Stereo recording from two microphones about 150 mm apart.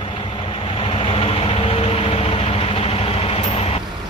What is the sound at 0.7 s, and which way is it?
Vehicle, 35° left (ahead or behind).